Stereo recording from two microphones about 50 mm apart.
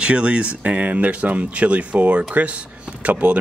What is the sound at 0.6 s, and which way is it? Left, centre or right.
Speech, right.